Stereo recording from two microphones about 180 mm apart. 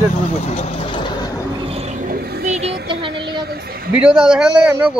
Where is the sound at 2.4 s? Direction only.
40° right (ahead or behind).